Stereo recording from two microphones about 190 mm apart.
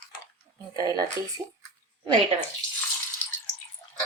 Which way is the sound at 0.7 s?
20° right (ahead or behind).